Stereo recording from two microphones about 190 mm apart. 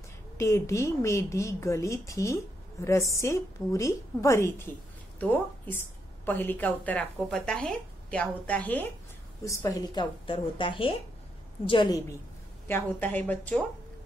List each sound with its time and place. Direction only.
0.4 s a woman's voice: 15° left (ahead or behind)
12.6 s a woman's voice: 10° left (ahead or behind)